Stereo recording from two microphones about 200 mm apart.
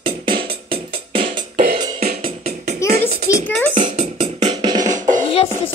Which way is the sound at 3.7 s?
35° right (ahead or behind).